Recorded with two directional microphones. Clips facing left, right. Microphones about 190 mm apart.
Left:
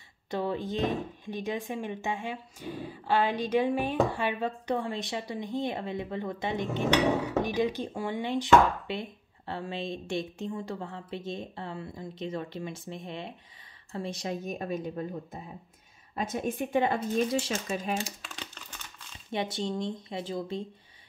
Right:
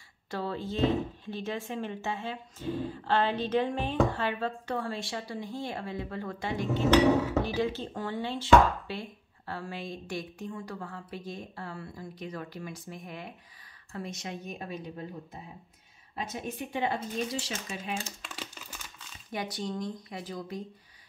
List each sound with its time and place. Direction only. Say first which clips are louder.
0.3 s speech: left 3 dB; 15° left (ahead or behind); by 15.0 s 45° left (ahead or behind)
16.2 s speech: left 5 dB; 50° left (ahead or behind)
18.2 s crumpling: right 1 dB; 5° right (ahead or behind)
19.3 s speech: left 3 dB; 25° left (ahead or behind)